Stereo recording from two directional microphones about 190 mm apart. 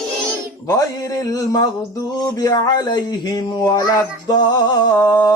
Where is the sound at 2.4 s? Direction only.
20° left (ahead or behind).